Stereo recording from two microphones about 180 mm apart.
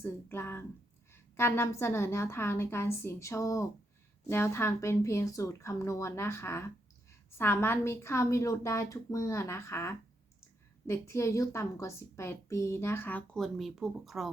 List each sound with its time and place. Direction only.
0.0 s a woman's voice: 15° left (ahead or behind)